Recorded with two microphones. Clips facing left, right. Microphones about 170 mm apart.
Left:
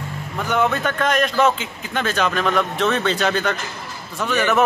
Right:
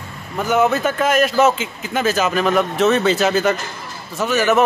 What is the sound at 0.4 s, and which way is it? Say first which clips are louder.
A man's voice: right 4 dB; 5° right (ahead or behind).